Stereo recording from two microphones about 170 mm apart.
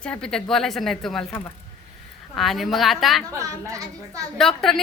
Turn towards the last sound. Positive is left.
turn(degrees=0)  # may be behind; listen again after turning